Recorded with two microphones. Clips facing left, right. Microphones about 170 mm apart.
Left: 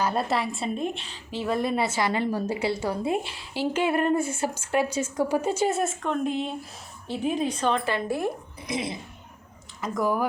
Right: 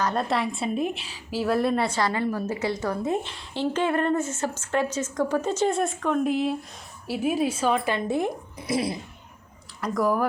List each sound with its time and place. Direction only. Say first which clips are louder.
0.0 s a woman's voice: even; 5° left (ahead or behind)
2.0 s a woman's voice: even; 20° left (ahead or behind)
2.9 s a woman's voice: even; 10° left (ahead or behind); by 7.9 s 10° right (ahead or behind)
7.9 s speech: right 2 dB; 20° right (ahead or behind)
8.6 s a woman's voice: right 4 dB; centre (ahead or behind)